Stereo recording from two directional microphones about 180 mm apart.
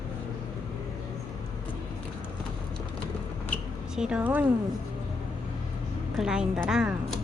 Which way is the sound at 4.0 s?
5° right (ahead or behind).